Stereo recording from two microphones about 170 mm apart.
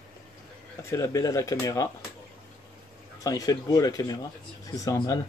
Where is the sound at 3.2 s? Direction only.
20° left (ahead or behind).